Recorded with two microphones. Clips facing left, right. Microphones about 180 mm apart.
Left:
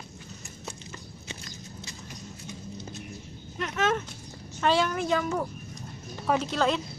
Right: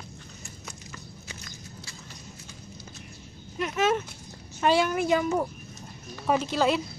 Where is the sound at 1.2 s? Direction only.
25° left (ahead or behind).